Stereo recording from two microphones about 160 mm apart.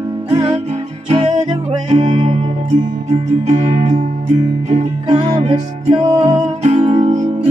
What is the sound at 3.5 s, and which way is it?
Music, 40° right (ahead or behind).